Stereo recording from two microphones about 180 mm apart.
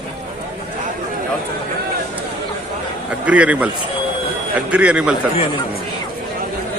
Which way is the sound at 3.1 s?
5° right (ahead or behind).